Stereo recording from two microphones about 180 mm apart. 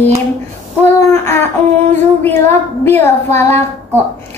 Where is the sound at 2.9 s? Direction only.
10° left (ahead or behind).